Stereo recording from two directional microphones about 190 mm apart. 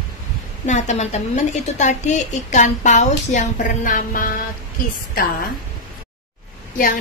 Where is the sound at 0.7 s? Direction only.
40° left (ahead or behind).